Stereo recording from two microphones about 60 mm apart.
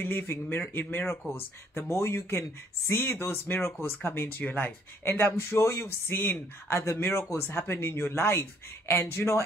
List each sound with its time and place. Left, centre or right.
0.3 s speech: left
1.8 s speech: left
6.7 s speech: left